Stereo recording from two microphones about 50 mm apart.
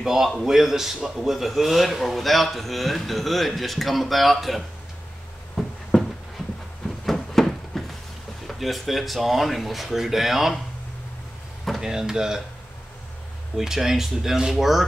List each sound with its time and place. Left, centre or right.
0.0 s a man's voice: centre
5.6 s a sound: centre
8.5 s a man's voice: centre
11.8 s speech: centre
13.6 s speech: centre